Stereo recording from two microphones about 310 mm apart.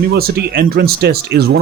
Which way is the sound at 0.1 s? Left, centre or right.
Right.